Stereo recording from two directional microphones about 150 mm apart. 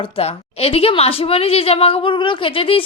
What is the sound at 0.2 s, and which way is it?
A woman's voice, 40° left (ahead or behind).